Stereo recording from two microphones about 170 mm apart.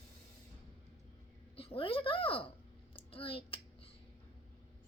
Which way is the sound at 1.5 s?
30° left (ahead or behind).